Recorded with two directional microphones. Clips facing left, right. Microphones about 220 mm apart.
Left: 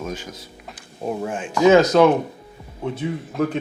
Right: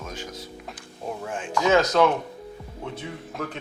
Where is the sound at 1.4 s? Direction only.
5° left (ahead or behind).